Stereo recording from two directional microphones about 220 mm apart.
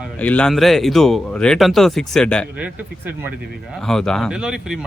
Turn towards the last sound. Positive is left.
turn(degrees=-5)  # may be behind; listen again after turning